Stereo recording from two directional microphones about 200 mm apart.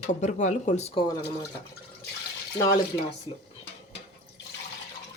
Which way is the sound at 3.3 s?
25° left (ahead or behind).